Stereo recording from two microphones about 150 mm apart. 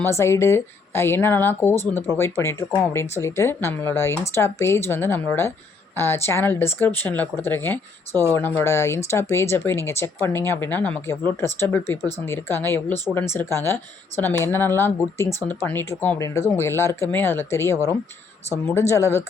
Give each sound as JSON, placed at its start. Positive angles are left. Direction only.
{"t": 0.0, "sound": "speech", "side_deg": 15}